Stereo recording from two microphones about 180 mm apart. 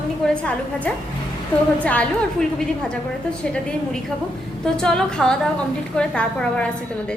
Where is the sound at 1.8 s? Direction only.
5° left (ahead or behind).